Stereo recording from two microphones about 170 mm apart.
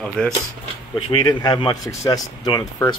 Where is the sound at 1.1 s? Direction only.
25° left (ahead or behind).